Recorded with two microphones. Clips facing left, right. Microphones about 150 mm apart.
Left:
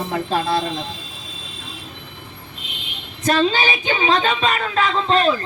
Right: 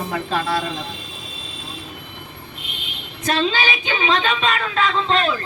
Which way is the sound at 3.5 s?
40° left (ahead or behind).